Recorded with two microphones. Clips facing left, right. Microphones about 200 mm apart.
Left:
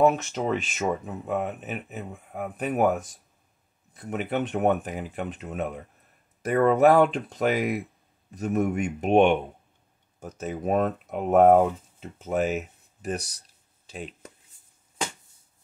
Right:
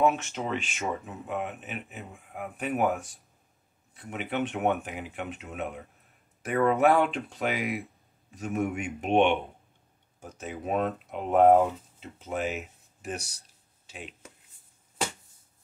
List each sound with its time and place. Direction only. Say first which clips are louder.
0.0 s speech: left 4 dB; 40° left (ahead or behind)